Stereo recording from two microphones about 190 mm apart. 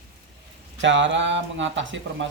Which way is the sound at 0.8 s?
75° right (ahead or behind).